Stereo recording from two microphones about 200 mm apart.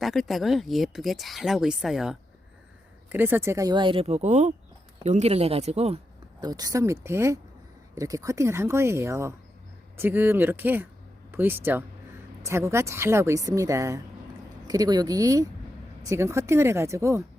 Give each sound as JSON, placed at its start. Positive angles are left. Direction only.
{"t": 0.0, "sound": "speech", "side_deg": 0}
{"t": 6.4, "sound": "a woman's voice", "side_deg": -20}
{"t": 11.3, "sound": "a sound", "side_deg": -10}
{"t": 12.5, "sound": "a woman's voice", "side_deg": -15}